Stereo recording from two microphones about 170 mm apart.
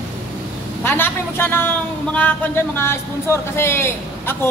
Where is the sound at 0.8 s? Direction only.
10° left (ahead or behind).